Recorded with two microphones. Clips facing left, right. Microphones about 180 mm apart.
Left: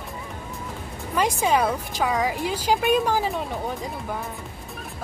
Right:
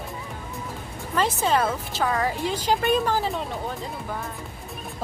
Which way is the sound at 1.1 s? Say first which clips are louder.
Left 1 dB; 15° left (ahead or behind).